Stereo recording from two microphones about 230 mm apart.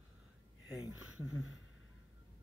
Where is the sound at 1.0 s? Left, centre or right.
Left.